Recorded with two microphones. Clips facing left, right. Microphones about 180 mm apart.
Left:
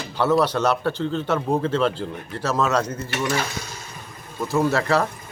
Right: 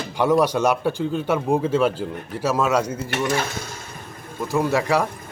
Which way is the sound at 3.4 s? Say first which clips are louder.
Right 1 dB; 50° right (ahead or behind).